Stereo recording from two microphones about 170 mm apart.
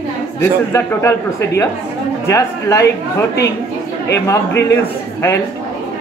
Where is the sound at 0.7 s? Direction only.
15° left (ahead or behind).